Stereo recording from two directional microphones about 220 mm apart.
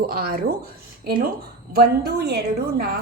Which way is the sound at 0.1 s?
45° right (ahead or behind).